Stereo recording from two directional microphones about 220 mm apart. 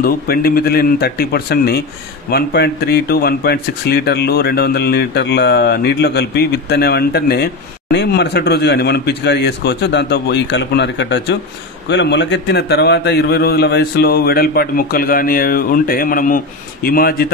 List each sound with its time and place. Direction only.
0.0 s speech: 45° left (ahead or behind)